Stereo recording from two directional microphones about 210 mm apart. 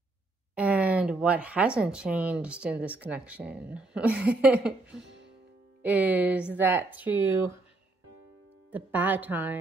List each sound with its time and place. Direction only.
0.6 s speech: 5° right (ahead or behind)
5.0 s music: 55° right (ahead or behind)
5.8 s speech: 5° right (ahead or behind)
8.7 s speech: 10° right (ahead or behind)